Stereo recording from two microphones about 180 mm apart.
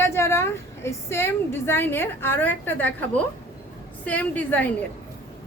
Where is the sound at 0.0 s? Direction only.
15° left (ahead or behind).